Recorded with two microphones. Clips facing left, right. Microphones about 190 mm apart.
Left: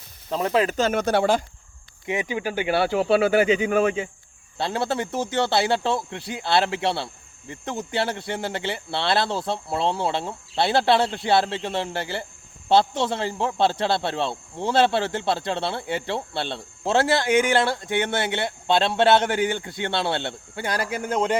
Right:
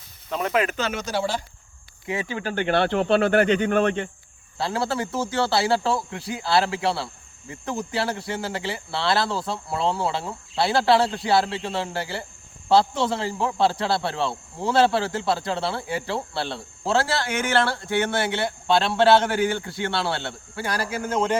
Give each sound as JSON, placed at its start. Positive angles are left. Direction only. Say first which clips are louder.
{"t": 0.3, "sound": "speech", "louder": "left 2 dB", "side_deg": 30}
{"t": 0.8, "sound": "speech", "louder": "left 5 dB", "side_deg": 50}
{"t": 2.0, "sound": "speech", "louder": "left 2 dB", "side_deg": 15}
{"t": 4.5, "sound": "speech", "louder": "left 1 dB", "side_deg": 25}